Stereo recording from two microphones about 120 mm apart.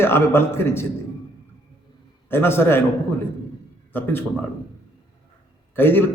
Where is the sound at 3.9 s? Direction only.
15° left (ahead or behind).